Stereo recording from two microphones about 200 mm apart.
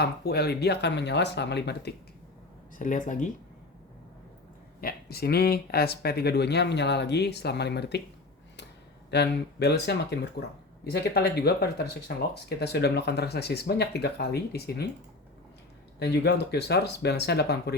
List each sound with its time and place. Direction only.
0.0 s speech: 55° left (ahead or behind)
2.7 s speech: 40° left (ahead or behind)
4.8 s speech: 50° left (ahead or behind)
9.0 s speech: 55° left (ahead or behind)
16.0 s speech: 55° left (ahead or behind)